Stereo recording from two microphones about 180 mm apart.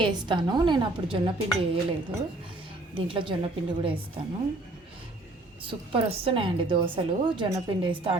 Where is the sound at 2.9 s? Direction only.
30° right (ahead or behind).